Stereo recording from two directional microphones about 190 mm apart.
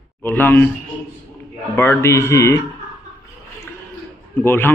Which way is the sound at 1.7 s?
15° left (ahead or behind).